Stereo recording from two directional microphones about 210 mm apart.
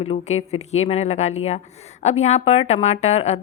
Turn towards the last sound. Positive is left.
turn(degrees=30)  # may be behind; listen again after turning